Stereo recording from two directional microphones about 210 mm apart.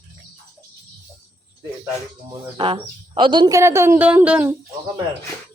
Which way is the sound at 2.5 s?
25° right (ahead or behind).